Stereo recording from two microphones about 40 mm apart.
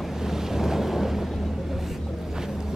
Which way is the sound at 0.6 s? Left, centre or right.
Centre.